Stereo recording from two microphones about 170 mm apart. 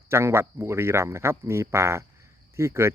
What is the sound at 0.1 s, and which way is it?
Speech, 15° right (ahead or behind).